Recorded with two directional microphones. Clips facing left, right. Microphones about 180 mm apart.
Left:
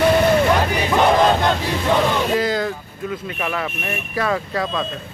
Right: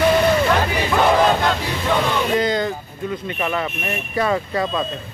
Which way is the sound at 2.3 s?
Centre (ahead or behind).